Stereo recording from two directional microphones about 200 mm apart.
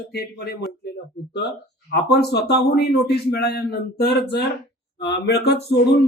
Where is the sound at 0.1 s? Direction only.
50° left (ahead or behind).